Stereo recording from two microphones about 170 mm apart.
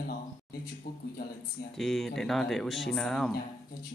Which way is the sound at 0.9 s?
65° left (ahead or behind).